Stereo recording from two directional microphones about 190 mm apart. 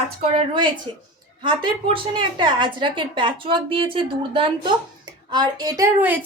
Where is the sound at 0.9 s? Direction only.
30° right (ahead or behind).